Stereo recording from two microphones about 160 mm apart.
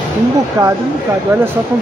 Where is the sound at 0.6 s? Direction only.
20° right (ahead or behind).